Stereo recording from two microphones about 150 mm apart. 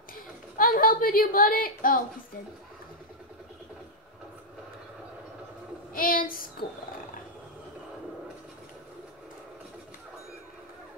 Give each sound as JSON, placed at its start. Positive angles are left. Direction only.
{"t": 0.6, "sound": "a woman's voice", "side_deg": 70}
{"t": 5.9, "sound": "speech", "side_deg": 70}